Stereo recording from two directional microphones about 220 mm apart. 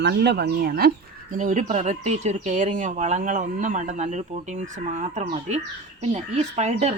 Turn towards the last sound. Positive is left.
turn(degrees=-30)  # may be behind; listen again after turning